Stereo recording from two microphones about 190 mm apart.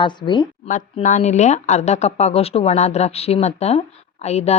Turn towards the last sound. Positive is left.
turn(degrees=35)  # may be behind; listen again after turning